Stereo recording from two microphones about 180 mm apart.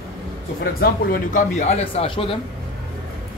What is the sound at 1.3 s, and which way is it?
Speech, 40° left (ahead or behind).